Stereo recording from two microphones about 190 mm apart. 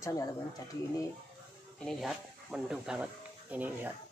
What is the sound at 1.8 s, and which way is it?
Speech, centre (ahead or behind).